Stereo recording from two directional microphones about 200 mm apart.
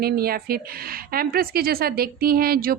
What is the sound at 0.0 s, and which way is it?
A woman's voice, 50° right (ahead or behind).